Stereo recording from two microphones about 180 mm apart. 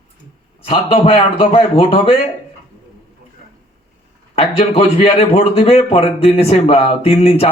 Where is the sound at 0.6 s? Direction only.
30° left (ahead or behind).